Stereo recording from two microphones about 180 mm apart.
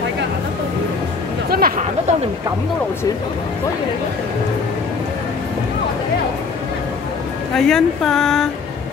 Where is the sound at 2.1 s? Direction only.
40° right (ahead or behind).